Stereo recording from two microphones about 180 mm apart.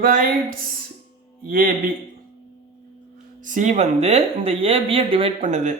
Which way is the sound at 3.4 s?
45° right (ahead or behind).